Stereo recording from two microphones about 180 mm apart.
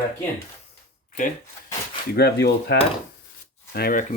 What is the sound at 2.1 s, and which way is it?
Speech, 65° left (ahead or behind).